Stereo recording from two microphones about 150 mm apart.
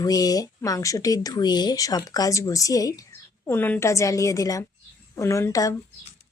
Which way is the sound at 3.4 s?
15° left (ahead or behind).